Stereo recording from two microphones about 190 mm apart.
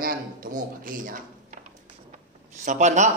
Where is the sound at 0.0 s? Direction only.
50° right (ahead or behind).